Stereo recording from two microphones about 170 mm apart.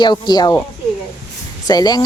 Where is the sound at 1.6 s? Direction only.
25° left (ahead or behind).